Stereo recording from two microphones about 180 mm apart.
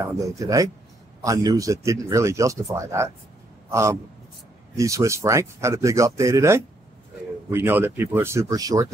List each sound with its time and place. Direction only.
0.0 s speech: 15° right (ahead or behind)